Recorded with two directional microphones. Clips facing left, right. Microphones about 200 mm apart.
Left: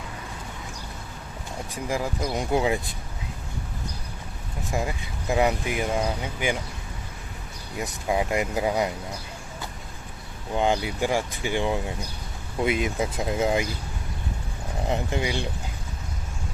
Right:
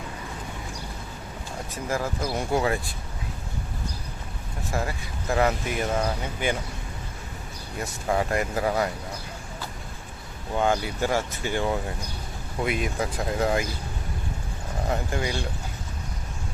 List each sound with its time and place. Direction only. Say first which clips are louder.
1.7 s speech: even; 15° left (ahead or behind)
4.7 s speech: left 1 dB; 15° left (ahead or behind)
7.8 s speech: even; 15° left (ahead or behind)
10.6 s speech: even; 15° left (ahead or behind)
14.8 s speech: left 1 dB; 20° left (ahead or behind)